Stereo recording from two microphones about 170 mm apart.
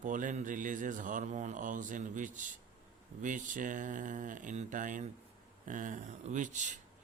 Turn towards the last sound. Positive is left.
turn(degrees=-45)  # may be behind; listen again after turning